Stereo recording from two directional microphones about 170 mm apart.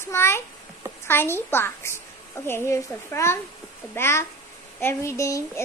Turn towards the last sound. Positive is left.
turn(degrees=15)  # may be behind; listen again after turning